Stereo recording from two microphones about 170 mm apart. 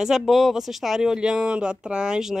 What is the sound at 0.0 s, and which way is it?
Speech, centre (ahead or behind).